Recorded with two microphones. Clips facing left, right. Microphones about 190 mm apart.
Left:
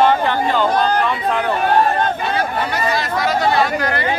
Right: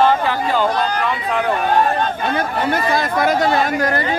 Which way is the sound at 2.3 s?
50° right (ahead or behind).